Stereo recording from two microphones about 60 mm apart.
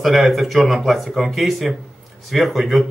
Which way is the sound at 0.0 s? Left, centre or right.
Centre.